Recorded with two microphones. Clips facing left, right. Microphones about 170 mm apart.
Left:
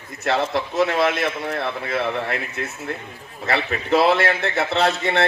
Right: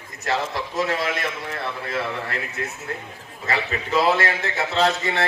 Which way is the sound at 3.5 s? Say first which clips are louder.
Left 4 dB; 65° left (ahead or behind).